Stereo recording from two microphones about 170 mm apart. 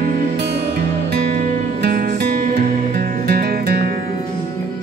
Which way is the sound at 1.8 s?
60° right (ahead or behind).